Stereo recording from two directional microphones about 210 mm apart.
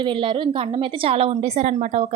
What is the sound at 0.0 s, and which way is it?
A woman's voice, 25° right (ahead or behind).